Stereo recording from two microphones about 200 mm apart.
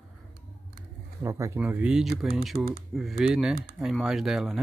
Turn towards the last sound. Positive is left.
turn(degrees=0)  # may be behind; listen again after turning